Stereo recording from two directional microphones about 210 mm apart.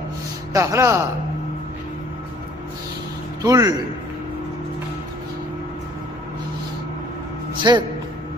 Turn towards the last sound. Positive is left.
turn(degrees=-20)  # may be behind; listen again after turning